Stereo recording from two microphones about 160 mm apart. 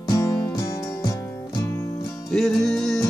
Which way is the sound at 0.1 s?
20° left (ahead or behind).